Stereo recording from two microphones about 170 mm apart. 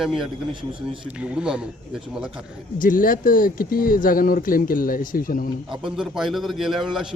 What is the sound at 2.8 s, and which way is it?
Speech, 55° left (ahead or behind).